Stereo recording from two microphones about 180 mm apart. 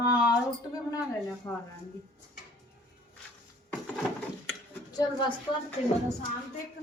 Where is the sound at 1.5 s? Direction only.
15° left (ahead or behind).